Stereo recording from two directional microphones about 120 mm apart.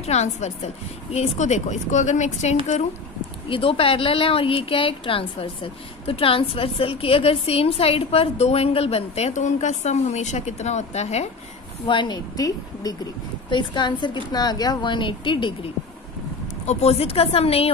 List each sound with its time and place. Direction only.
0.0 s speech: 65° left (ahead or behind)
3.4 s speech: 50° left (ahead or behind)
11.9 s a woman's voice: 40° left (ahead or behind)
16.6 s speech: 60° left (ahead or behind)